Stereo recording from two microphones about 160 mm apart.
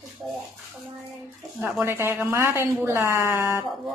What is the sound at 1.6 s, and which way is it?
Speech, 10° right (ahead or behind).